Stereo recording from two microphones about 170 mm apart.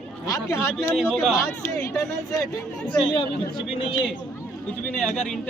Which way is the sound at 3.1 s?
25° left (ahead or behind).